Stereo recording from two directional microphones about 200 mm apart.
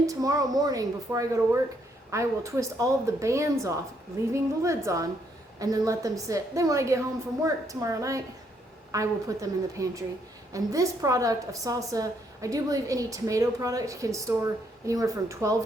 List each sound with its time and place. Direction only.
0.0 s a woman's voice: 15° right (ahead or behind)